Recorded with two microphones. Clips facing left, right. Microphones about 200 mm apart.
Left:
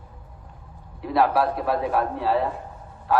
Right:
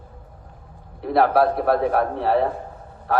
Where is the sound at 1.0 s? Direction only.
55° right (ahead or behind).